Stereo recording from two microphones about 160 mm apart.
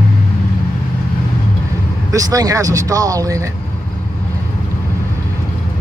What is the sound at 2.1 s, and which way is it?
Speech, 20° right (ahead or behind).